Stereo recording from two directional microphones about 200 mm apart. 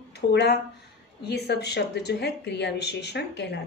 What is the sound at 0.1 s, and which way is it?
A woman's voice, 55° left (ahead or behind).